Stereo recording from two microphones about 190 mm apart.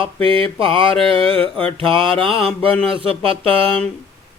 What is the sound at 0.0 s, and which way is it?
Mantra, 30° right (ahead or behind).